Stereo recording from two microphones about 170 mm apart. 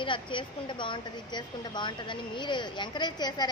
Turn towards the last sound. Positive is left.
turn(degrees=25)  # may be behind; listen again after turning